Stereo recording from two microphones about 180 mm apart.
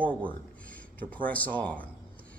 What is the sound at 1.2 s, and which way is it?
Speech, 10° left (ahead or behind).